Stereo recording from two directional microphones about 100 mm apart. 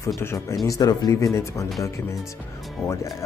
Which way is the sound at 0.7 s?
40° left (ahead or behind).